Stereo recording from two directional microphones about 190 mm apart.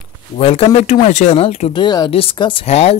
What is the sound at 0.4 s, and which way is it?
Speech, 30° left (ahead or behind).